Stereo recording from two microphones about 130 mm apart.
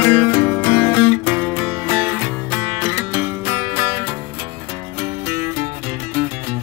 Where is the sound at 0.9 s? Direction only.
35° left (ahead or behind).